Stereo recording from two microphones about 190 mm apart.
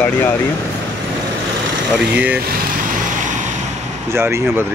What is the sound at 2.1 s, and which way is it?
Speech, 10° right (ahead or behind).